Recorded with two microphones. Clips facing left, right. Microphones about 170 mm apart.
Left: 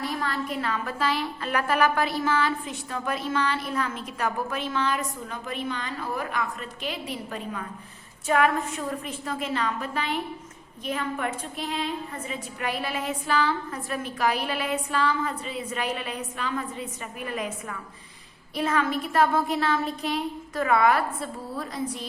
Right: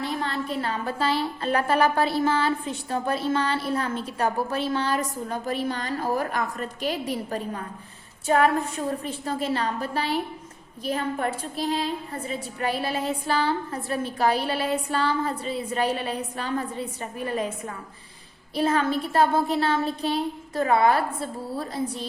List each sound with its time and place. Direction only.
0.0 s a woman's voice: 25° right (ahead or behind)